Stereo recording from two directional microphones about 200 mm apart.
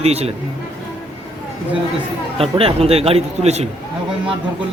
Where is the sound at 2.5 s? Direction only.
30° right (ahead or behind).